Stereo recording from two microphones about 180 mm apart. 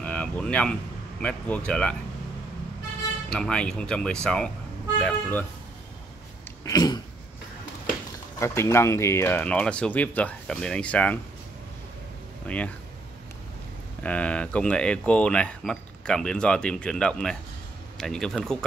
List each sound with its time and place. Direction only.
0.0 s a sound: 5° left (ahead or behind)
1.2 s speech: 5° left (ahead or behind)
3.3 s speech: 5° left (ahead or behind)
6.6 s a sound: 20° left (ahead or behind)
8.4 s speech: 15° left (ahead or behind)
12.4 s speech: 5° left (ahead or behind)
14.0 s speech: 5° left (ahead or behind)